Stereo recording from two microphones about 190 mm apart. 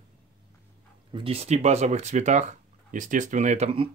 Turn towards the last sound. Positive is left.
turn(degrees=-30)  # may be behind; listen again after turning